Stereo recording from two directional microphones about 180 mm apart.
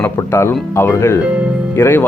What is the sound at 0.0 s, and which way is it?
Speech, 15° left (ahead or behind).